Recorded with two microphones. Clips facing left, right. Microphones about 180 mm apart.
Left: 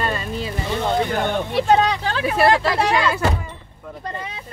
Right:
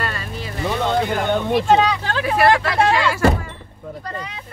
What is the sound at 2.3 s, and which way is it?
Speech, 25° left (ahead or behind).